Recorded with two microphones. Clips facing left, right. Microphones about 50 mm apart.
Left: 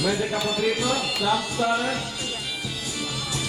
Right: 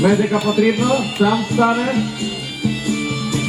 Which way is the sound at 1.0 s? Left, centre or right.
Right.